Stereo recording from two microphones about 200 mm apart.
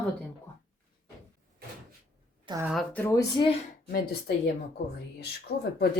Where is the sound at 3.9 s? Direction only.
55° left (ahead or behind).